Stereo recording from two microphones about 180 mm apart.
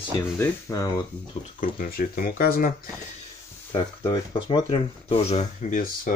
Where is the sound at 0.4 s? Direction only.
20° left (ahead or behind).